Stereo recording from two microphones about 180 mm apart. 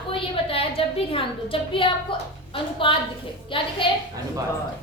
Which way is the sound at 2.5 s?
30° left (ahead or behind).